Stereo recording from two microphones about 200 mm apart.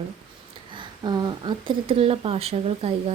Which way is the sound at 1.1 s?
20° right (ahead or behind).